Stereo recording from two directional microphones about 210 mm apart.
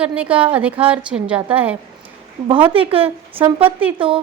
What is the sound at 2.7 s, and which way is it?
A woman's voice, 25° right (ahead or behind).